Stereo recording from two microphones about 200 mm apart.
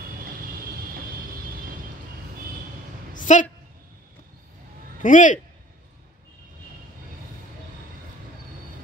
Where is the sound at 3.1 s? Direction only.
40° left (ahead or behind).